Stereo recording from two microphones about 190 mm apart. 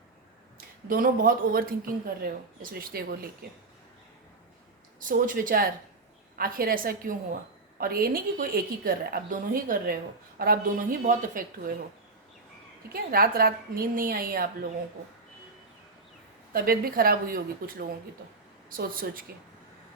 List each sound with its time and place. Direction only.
0.9 s a woman's voice: 45° right (ahead or behind)
4.9 s a woman's voice: 45° right (ahead or behind)
12.9 s a woman's voice: 50° right (ahead or behind)
16.5 s a woman's voice: 50° right (ahead or behind)